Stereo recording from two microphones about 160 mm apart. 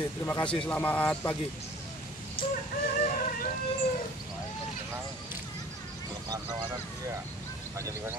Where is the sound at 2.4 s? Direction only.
30° left (ahead or behind).